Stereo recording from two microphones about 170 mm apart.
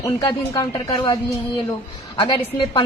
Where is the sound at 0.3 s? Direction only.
25° left (ahead or behind).